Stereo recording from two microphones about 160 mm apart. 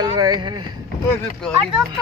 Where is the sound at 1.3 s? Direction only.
5° left (ahead or behind).